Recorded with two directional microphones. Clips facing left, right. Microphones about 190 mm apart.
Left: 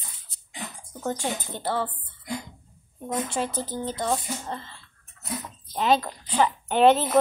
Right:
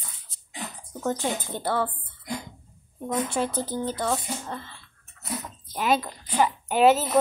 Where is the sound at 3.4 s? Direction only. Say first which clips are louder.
Right 2 dB; 15° right (ahead or behind).